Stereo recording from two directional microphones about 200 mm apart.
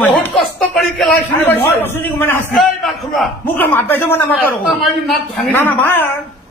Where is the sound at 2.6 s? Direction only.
Centre (ahead or behind).